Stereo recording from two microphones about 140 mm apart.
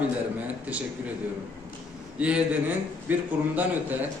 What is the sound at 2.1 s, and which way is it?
A man's voice, 10° right (ahead or behind).